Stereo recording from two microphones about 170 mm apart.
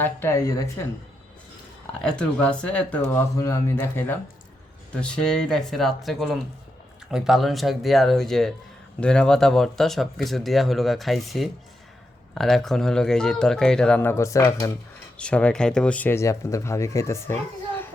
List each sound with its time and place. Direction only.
0.0 s speech: 15° left (ahead or behind)
2.0 s speech: 5° left (ahead or behind)
15.2 s speech: 5° left (ahead or behind)